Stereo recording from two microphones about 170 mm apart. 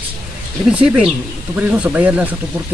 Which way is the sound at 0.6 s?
5° right (ahead or behind).